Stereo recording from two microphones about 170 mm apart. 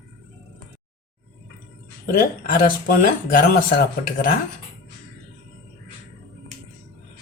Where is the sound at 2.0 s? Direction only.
60° left (ahead or behind).